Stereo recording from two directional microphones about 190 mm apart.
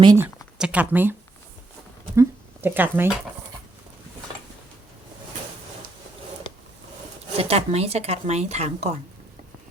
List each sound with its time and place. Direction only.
0.2 s speech: 10° right (ahead or behind)
2.1 s speech: 10° right (ahead or behind)
7.3 s speech: 30° right (ahead or behind)